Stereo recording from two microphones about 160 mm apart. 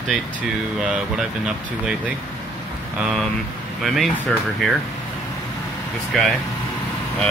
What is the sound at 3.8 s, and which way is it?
Speech, centre (ahead or behind).